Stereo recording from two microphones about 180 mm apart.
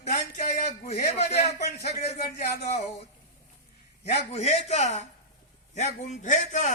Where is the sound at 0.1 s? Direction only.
40° left (ahead or behind).